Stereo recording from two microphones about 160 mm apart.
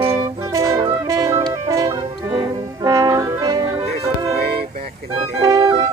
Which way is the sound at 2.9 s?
20° right (ahead or behind).